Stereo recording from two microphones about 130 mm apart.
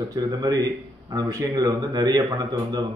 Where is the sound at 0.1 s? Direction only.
30° right (ahead or behind).